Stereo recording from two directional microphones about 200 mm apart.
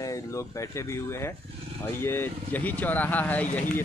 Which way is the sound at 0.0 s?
15° left (ahead or behind).